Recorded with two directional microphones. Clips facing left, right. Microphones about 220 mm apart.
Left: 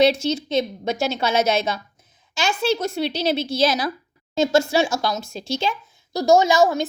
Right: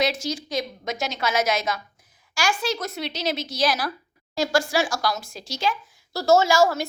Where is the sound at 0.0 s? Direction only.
25° left (ahead or behind).